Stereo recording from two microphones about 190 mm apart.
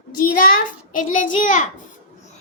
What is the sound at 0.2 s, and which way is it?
A child's voice, 45° left (ahead or behind).